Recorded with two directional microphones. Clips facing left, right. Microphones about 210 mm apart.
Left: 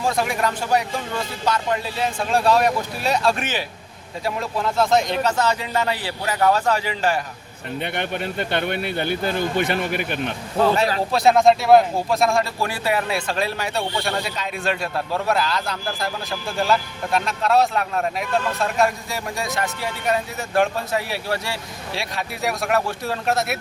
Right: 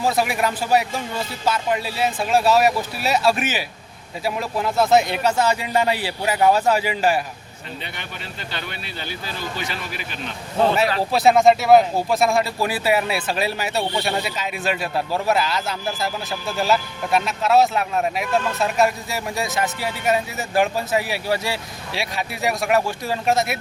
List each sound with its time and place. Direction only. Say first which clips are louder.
0.0 s speech: right 1 dB; 5° right (ahead or behind)
7.8 s speech: left 12 dB; 55° left (ahead or behind)
10.8 s speech: right 1 dB; centre (ahead or behind)